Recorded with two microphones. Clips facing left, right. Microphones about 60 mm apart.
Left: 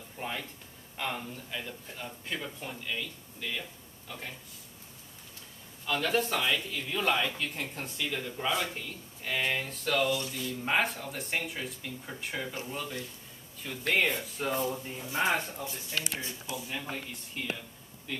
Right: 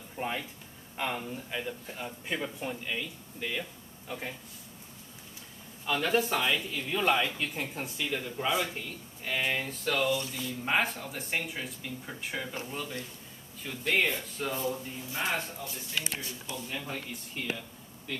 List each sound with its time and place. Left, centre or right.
0.2 s speech: centre
5.9 s speech: centre
15.1 s speech: left
16.4 s speech: centre